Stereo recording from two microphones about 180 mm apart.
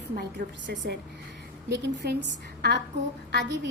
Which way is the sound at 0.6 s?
80° right.